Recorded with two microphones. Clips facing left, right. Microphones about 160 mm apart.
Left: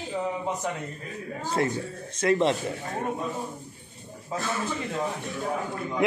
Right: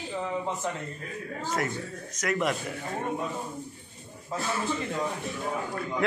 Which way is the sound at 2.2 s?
30° left (ahead or behind).